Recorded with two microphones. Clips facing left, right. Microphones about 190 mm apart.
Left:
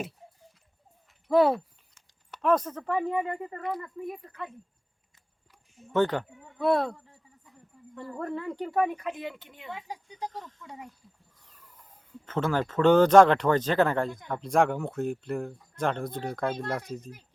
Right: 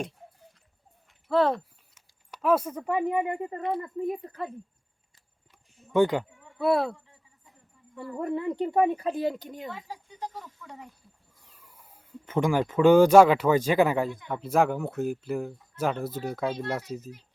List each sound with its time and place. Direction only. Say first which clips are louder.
1.3 s speech: left 2 dB; 10° left (ahead or behind)
2.0 s speech: even; 5° right (ahead or behind); by 4.5 s 35° right (ahead or behind)
5.9 s speech: right 3 dB; 10° right (ahead or behind)
7.9 s speech: right 3 dB; 15° right (ahead or behind); by 9.7 s 40° right (ahead or behind)
10.3 s speech: left 1 dB; 10° right (ahead or behind)